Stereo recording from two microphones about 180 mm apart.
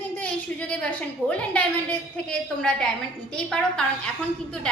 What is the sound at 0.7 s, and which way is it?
A woman's voice, 5° left (ahead or behind).